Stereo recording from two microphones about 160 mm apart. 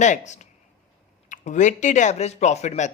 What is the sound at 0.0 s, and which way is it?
Speech, 50° left (ahead or behind).